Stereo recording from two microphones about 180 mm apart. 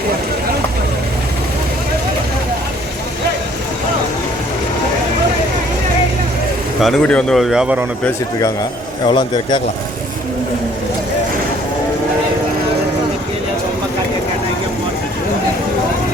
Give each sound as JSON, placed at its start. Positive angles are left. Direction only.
{"t": 6.7, "sound": "speech", "side_deg": 0}
{"t": 9.0, "sound": "a man's voice", "side_deg": 25}